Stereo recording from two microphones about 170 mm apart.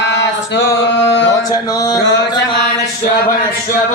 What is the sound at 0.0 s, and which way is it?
Male singing, 90° left.